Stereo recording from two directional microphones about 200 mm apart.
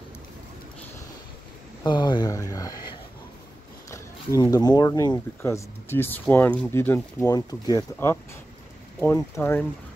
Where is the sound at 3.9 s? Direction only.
15° left (ahead or behind).